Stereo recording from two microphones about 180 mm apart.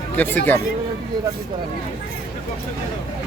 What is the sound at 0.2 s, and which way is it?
Speech, 10° left (ahead or behind).